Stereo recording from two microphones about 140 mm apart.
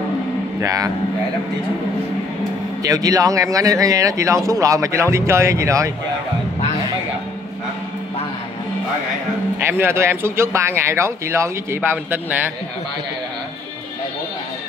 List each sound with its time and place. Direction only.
0.6 s speech: 25° right (ahead or behind)
2.8 s speech: 25° right (ahead or behind)
9.7 s speech: 20° right (ahead or behind)